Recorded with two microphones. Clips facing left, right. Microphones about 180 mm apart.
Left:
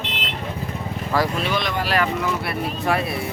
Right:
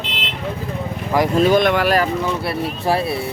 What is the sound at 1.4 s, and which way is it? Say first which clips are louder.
Speech: right 10 dB; 45° right (ahead or behind).